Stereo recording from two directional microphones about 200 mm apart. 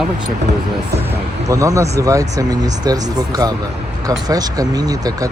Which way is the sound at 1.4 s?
15° right (ahead or behind).